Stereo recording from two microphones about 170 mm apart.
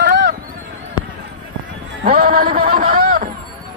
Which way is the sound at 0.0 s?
75° right (ahead or behind).